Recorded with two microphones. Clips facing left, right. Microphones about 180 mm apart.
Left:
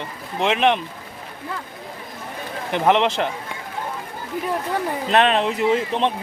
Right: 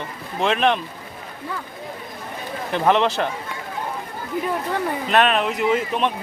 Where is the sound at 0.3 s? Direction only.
20° left (ahead or behind).